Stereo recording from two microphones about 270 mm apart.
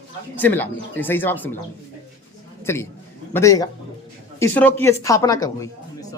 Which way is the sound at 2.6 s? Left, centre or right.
Centre.